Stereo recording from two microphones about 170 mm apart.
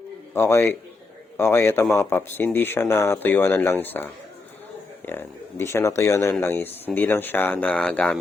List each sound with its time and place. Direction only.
0.3 s a man's voice: 15° left (ahead or behind)